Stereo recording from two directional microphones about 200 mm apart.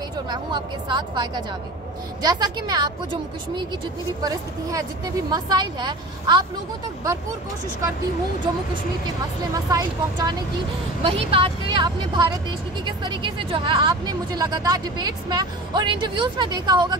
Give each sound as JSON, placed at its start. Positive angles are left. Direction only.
{"t": 0.3, "sound": "speech", "side_deg": -20}
{"t": 9.5, "sound": "speech", "side_deg": -20}